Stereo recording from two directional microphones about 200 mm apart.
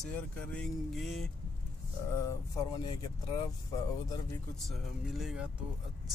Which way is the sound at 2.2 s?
15° left (ahead or behind).